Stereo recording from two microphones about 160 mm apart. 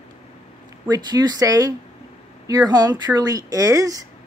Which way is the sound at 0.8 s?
25° right (ahead or behind).